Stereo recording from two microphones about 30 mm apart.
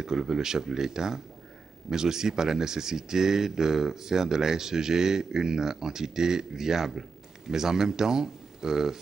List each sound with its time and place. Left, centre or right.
0.0 s speech: centre